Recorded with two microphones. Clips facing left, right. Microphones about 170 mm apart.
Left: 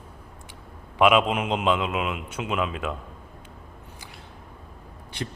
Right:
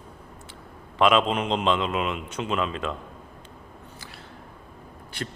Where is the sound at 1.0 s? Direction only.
10° left (ahead or behind).